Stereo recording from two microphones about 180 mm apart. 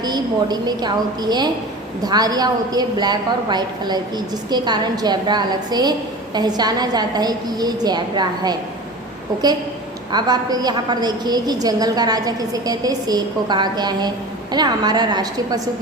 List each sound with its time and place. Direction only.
0.0 s a woman's voice: 25° right (ahead or behind)
10.1 s a woman's voice: 25° right (ahead or behind)